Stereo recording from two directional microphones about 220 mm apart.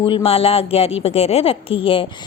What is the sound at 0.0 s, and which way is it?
A woman's voice, 25° left (ahead or behind).